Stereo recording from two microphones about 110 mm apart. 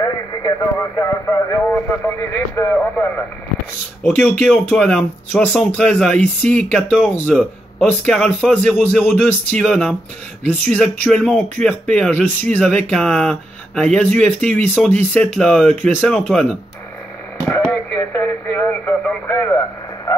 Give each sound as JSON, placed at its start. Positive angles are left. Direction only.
{"t": 0.3, "sound": "speech", "side_deg": 25}
{"t": 15.2, "sound": "speech", "side_deg": 5}
{"t": 17.6, "sound": "radio", "side_deg": 20}
{"t": 20.1, "sound": "frog", "side_deg": 25}